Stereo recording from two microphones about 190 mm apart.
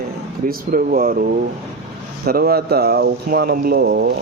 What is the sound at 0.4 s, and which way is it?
Speech, 45° right (ahead or behind).